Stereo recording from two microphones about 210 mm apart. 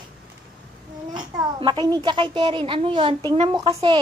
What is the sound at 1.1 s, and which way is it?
A child's voice, 20° right (ahead or behind).